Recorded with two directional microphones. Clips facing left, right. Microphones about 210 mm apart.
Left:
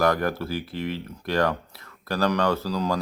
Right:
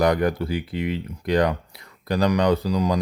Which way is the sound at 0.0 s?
15° right (ahead or behind).